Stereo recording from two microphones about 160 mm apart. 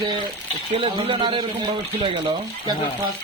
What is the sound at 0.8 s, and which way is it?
Speech, 35° right (ahead or behind).